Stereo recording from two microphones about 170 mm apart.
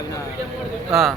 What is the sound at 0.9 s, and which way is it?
Speech, centre (ahead or behind).